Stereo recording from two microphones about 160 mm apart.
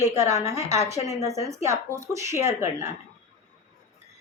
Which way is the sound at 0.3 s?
45° left (ahead or behind).